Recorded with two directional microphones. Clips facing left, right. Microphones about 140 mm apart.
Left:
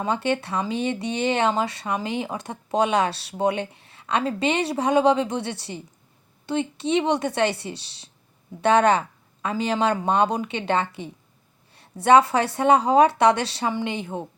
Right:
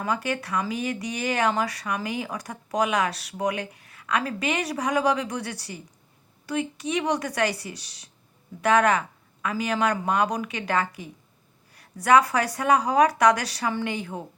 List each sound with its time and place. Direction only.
0.0 s speech: 25° left (ahead or behind)